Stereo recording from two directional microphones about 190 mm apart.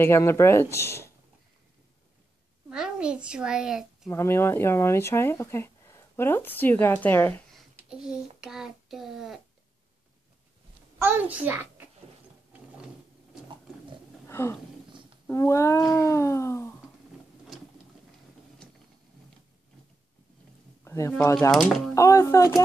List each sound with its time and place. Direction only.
0.0 s speech: 15° left (ahead or behind)
2.7 s a child's voice: 5° right (ahead or behind)
4.1 s speech: 15° left (ahead or behind)
7.9 s a child's voice: 5° right (ahead or behind)
11.0 s a child's voice: 10° right (ahead or behind)
12.5 s sewing machine: 5° right (ahead or behind)
14.2 s a sound: 15° left (ahead or behind)
15.2 s speech: 15° left (ahead or behind)
20.8 s a sound: 15° left (ahead or behind)
21.4 s a child's voice: centre (ahead or behind)
21.9 s speech: 15° left (ahead or behind)